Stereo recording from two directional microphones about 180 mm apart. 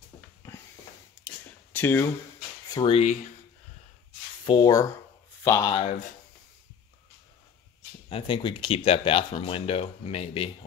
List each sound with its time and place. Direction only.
1.2 s a sound: 10° left (ahead or behind)
2.7 s speech: 30° left (ahead or behind)
4.5 s speech: 25° left (ahead or behind)
8.1 s speech: 30° left (ahead or behind)